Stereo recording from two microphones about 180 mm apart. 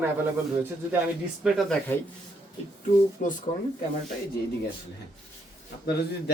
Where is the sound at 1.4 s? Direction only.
Centre (ahead or behind).